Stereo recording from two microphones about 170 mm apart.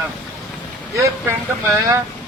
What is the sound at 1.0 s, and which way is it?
Speech, 15° right (ahead or behind).